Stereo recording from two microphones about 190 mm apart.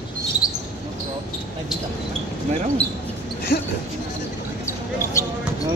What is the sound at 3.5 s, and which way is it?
Speech, 60° left (ahead or behind).